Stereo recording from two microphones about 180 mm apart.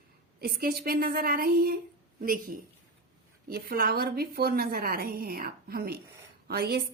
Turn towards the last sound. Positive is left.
turn(degrees=-60)  # may be behind; listen again after turning